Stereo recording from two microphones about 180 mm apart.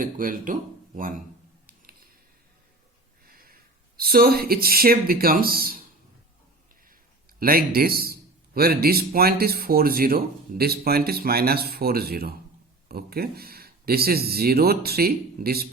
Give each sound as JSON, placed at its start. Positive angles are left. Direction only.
{"t": 0.0, "sound": "speech", "side_deg": -50}
{"t": 3.2, "sound": "speech", "side_deg": -55}
{"t": 7.3, "sound": "speech", "side_deg": -55}